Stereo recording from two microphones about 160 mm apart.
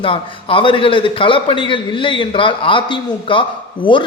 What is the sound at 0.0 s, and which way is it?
A man's voice, 35° left (ahead or behind).